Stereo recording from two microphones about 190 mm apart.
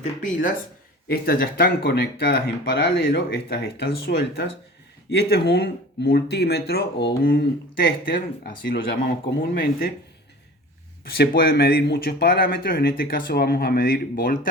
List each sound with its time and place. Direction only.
0.2 s speech: 45° left (ahead or behind)
11.0 s speech: 55° left (ahead or behind)